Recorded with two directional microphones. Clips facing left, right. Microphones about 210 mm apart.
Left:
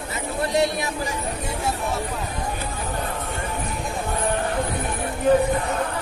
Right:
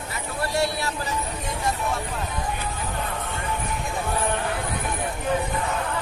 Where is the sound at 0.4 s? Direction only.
20° left (ahead or behind).